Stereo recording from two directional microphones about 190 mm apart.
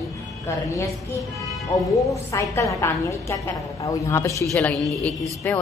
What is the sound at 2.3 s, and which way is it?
A woman's voice, 15° left (ahead or behind).